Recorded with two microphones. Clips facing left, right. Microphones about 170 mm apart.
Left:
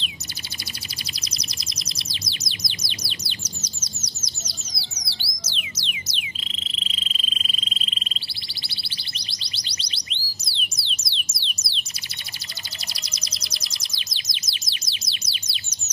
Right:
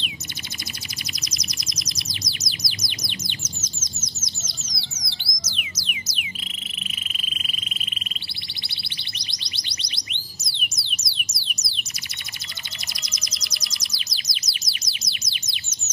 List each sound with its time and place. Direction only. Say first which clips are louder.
1.2 s bird: right 2 dB; 30° left (ahead or behind)
4.4 s music: left 1 dB; 35° left (ahead or behind)
7.2 s cricket: left 1 dB; 30° left (ahead or behind)
8.6 s a sound: even; 35° left (ahead or behind)
13.0 s chirp: even; 30° left (ahead or behind)